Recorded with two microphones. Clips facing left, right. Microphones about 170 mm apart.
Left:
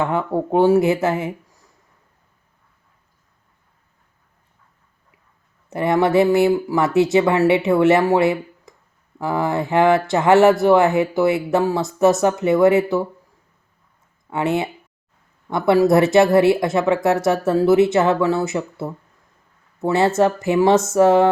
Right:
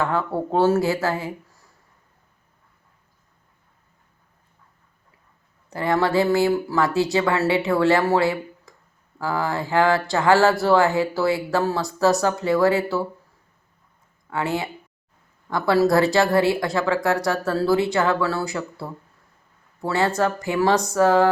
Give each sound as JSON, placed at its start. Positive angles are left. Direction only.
{"t": 0.0, "sound": "speech", "side_deg": 20}
{"t": 5.7, "sound": "speech", "side_deg": 20}
{"t": 14.3, "sound": "speech", "side_deg": 20}